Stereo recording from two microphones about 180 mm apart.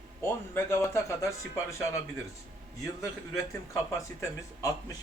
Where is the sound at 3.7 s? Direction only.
15° left (ahead or behind).